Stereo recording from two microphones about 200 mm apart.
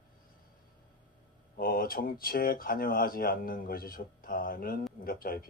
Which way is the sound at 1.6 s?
45° left (ahead or behind).